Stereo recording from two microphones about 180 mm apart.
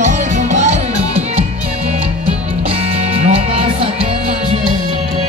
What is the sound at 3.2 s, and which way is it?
Music, 40° right (ahead or behind).